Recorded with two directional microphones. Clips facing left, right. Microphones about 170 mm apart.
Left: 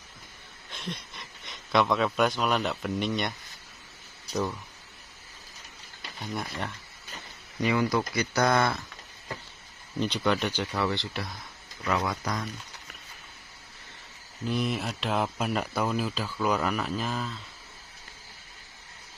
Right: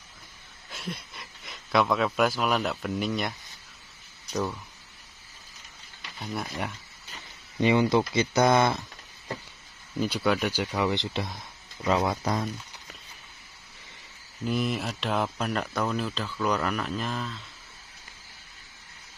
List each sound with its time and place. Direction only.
0.7 s speech: 5° right (ahead or behind)
6.1 s speech: centre (ahead or behind)
7.6 s speech: 25° right (ahead or behind)
9.9 s speech: 5° right (ahead or behind); by 12.4 s 25° right (ahead or behind)
14.4 s speech: centre (ahead or behind)